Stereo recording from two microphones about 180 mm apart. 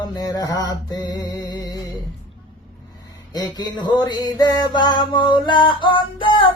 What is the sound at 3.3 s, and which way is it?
Mantra, 20° left (ahead or behind).